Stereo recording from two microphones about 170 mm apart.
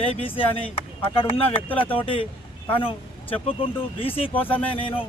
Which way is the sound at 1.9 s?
30° left (ahead or behind).